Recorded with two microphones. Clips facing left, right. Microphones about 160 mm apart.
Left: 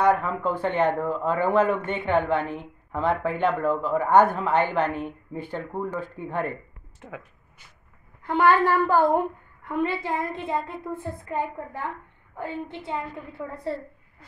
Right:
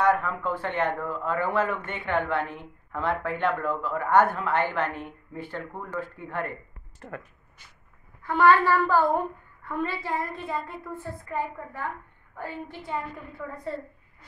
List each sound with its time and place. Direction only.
0.0 s speech: 20° left (ahead or behind)
7.0 s speech: centre (ahead or behind)
8.2 s a woman's voice: 20° left (ahead or behind)